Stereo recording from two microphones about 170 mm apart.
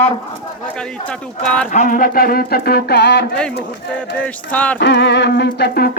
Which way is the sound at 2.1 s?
60° left (ahead or behind).